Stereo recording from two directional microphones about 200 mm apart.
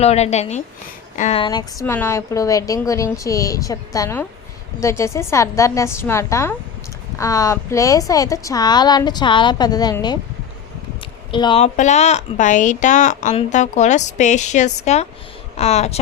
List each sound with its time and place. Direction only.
0.0 s a woman's voice: 30° left (ahead or behind)
11.3 s a woman's voice: 25° left (ahead or behind)